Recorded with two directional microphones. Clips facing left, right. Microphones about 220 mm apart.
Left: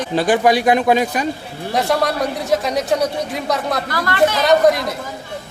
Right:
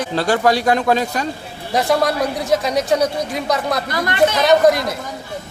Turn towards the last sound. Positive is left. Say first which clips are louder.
# right 1 dB
turn(degrees=0)  # may be behind; listen again after turning